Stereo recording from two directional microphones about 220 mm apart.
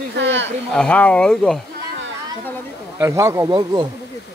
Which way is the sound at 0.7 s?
5° left (ahead or behind).